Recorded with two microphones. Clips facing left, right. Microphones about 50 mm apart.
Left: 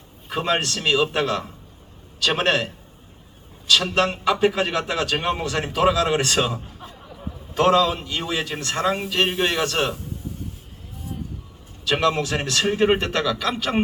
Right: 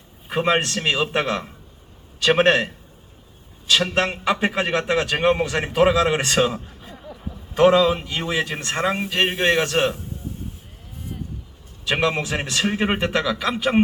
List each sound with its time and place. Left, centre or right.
0.3 s a man's voice: centre
3.7 s a man's voice: right
11.9 s speech: right